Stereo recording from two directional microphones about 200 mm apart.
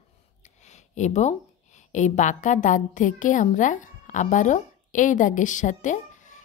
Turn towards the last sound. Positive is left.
turn(degrees=40)  # may be behind; listen again after turning